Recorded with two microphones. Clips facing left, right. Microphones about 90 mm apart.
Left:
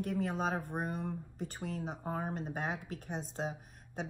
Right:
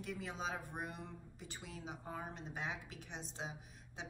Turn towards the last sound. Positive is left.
turn(degrees=45)  # may be behind; listen again after turning